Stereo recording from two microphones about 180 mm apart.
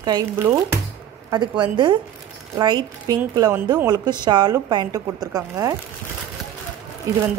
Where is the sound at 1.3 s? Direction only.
25° right (ahead or behind).